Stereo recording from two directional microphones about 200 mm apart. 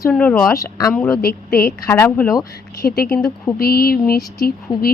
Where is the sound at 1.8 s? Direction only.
10° left (ahead or behind).